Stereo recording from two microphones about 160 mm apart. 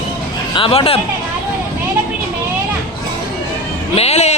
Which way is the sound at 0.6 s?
35° left (ahead or behind).